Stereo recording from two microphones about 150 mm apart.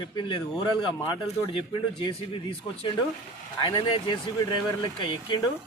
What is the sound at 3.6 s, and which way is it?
Speech, 35° left (ahead or behind).